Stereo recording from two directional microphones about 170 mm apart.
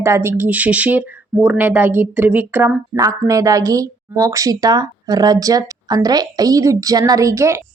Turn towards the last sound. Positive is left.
turn(degrees=-15)  # may be behind; listen again after turning